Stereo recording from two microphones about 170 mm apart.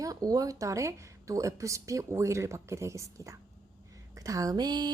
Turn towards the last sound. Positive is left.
turn(degrees=-25)  # may be behind; listen again after turning